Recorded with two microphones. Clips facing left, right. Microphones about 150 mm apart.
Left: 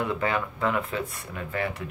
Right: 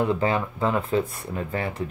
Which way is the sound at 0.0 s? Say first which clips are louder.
Right 4 dB; 30° right (ahead or behind).